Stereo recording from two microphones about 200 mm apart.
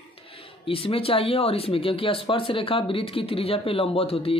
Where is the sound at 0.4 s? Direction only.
30° left (ahead or behind).